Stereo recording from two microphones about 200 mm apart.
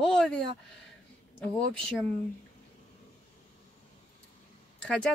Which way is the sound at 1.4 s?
5° left (ahead or behind).